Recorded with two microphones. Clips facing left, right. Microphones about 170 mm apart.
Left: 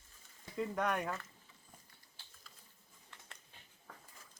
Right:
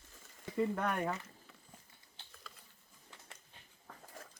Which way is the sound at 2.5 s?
80° right.